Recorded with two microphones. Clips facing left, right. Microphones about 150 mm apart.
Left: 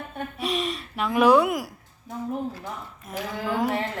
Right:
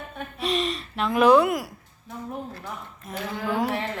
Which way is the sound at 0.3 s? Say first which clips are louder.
Right 2 dB; 5° left (ahead or behind).